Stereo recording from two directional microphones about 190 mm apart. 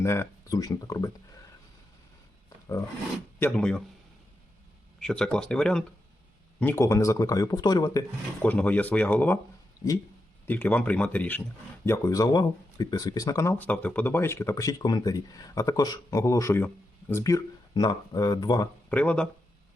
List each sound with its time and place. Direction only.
0.0 s speech: 15° left (ahead or behind)
3.4 s speech: 5° left (ahead or behind)
4.9 s speech: 5° left (ahead or behind); by 8.0 s 20° left (ahead or behind)
8.4 s speech: 10° left (ahead or behind)
10.4 s speech: 10° left (ahead or behind)
18.9 s speech: 5° left (ahead or behind)